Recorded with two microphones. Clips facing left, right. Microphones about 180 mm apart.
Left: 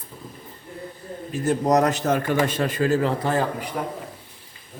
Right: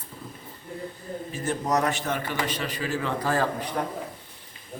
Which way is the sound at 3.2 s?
20° left (ahead or behind).